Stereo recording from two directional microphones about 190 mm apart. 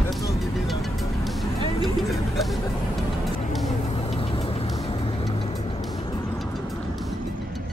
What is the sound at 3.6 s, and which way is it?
Vehicle, 30° left (ahead or behind).